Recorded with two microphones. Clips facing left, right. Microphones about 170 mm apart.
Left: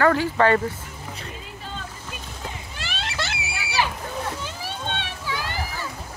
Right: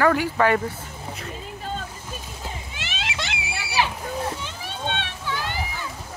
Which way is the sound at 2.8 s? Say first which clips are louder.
Left 2 dB; centre (ahead or behind).